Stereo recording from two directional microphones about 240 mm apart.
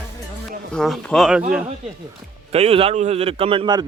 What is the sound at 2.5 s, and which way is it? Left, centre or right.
A man's voice, right.